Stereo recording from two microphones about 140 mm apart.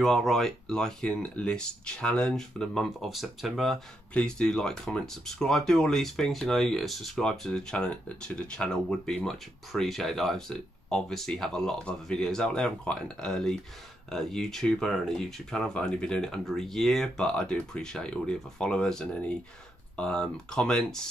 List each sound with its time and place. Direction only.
0.0 s speech: centre (ahead or behind)